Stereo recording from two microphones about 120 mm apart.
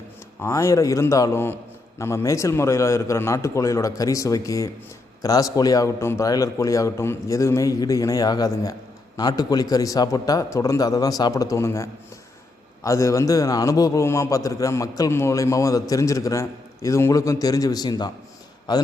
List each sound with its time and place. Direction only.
0.4 s a man's voice: 25° left (ahead or behind)